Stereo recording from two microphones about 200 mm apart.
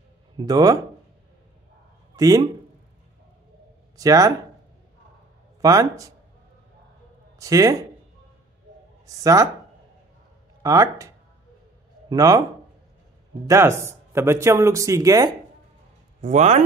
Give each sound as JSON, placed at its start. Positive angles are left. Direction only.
{"t": 0.4, "sound": "speech", "side_deg": -20}
{"t": 2.1, "sound": "speech", "side_deg": -15}
{"t": 3.9, "sound": "speech", "side_deg": -15}
{"t": 5.6, "sound": "speech", "side_deg": -15}
{"t": 7.3, "sound": "speech", "side_deg": -15}
{"t": 9.0, "sound": "speech", "side_deg": -15}
{"t": 10.6, "sound": "speech", "side_deg": -15}
{"t": 13.5, "sound": "speech", "side_deg": -15}
{"t": 16.2, "sound": "speech", "side_deg": -35}